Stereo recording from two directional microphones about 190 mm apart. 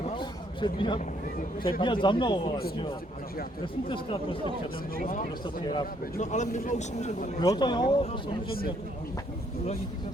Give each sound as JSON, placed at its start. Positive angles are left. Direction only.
{"t": 0.0, "sound": "a sound", "side_deg": 25}
{"t": 1.8, "sound": "speech", "side_deg": 25}
{"t": 3.8, "sound": "speech", "side_deg": 25}
{"t": 4.9, "sound": "a man's voice", "side_deg": 45}
{"t": 7.3, "sound": "speech", "side_deg": 20}